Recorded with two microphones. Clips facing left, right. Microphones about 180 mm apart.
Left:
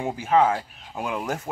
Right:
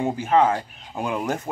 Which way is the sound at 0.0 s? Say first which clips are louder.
Right 1 dB; 10° left (ahead or behind).